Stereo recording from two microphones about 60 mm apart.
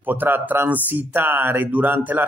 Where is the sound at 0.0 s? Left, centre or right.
Right.